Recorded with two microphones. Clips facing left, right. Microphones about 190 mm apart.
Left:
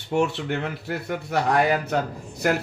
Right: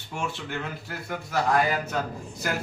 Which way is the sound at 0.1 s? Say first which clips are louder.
Left 9 dB; 65° left (ahead or behind).